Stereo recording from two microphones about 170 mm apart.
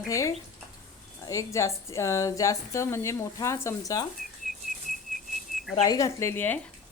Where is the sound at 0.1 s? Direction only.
20° left (ahead or behind).